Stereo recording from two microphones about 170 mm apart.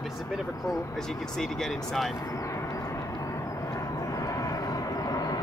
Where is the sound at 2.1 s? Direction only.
20° left (ahead or behind).